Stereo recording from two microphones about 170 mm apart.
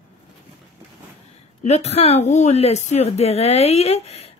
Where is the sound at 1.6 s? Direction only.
40° left (ahead or behind).